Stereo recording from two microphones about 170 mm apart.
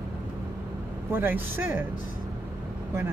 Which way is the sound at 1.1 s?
10° right (ahead or behind).